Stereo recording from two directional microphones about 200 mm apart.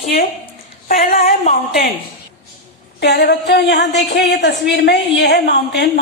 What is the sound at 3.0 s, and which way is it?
A woman's voice, 55° left (ahead or behind).